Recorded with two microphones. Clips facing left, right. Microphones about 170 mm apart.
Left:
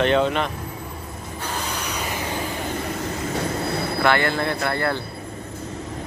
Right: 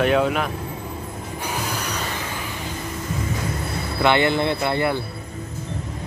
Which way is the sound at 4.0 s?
20° right (ahead or behind).